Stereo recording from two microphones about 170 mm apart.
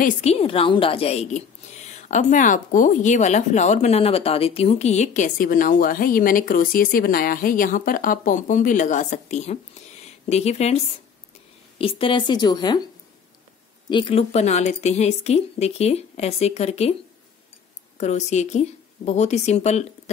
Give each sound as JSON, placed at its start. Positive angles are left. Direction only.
{"t": 0.2, "sound": "a woman's voice", "side_deg": 35}
{"t": 11.8, "sound": "a woman's voice", "side_deg": 30}
{"t": 13.8, "sound": "a woman's voice", "side_deg": 30}
{"t": 17.9, "sound": "a woman's voice", "side_deg": 40}